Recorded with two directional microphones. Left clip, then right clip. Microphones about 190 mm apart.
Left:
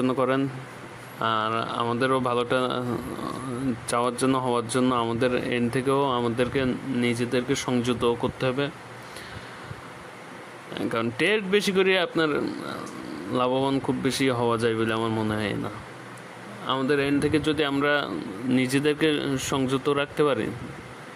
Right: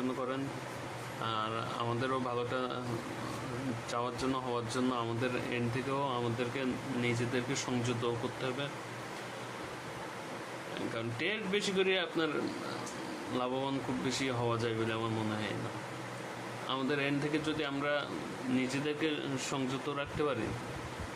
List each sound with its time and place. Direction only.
1.2 s speech: 45° left (ahead or behind)
3.9 s speech: 45° left (ahead or behind)
11.0 s speech: 55° left (ahead or behind)
13.3 s speech: 45° left (ahead or behind)
16.6 s speech: 40° left (ahead or behind)